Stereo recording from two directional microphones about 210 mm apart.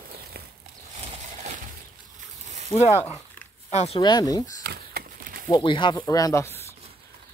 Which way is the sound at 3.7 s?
30° left (ahead or behind).